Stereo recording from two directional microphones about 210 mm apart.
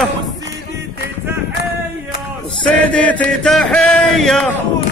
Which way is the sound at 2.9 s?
5° left (ahead or behind).